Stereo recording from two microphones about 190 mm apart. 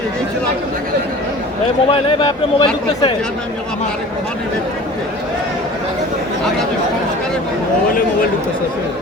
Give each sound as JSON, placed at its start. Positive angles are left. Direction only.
{"t": 1.9, "sound": "speech", "side_deg": 25}